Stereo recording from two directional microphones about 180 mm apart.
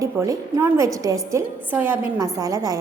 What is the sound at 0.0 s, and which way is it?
A woman's voice, 20° right (ahead or behind).